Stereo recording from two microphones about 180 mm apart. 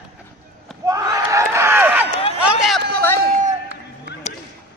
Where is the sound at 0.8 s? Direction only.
20° right (ahead or behind).